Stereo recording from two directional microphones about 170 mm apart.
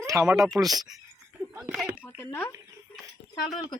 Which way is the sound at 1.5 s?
15° right (ahead or behind).